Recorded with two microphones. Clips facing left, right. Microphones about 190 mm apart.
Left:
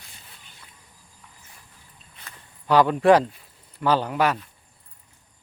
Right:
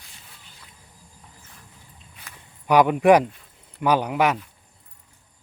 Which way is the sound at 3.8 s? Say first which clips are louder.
Right 1 dB; 15° right (ahead or behind).